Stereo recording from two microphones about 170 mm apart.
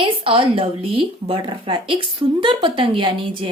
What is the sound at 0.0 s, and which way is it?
Speech, 30° right (ahead or behind).